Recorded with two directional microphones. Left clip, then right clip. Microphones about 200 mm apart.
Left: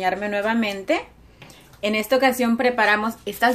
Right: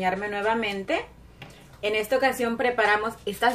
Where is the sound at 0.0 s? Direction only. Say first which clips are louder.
Left 3 dB; 55° left (ahead or behind).